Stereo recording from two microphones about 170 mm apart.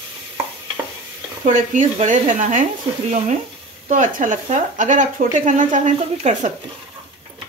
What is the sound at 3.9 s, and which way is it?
Speech, 50° right (ahead or behind).